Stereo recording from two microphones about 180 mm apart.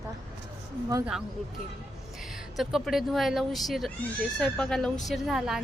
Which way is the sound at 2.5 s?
Centre (ahead or behind).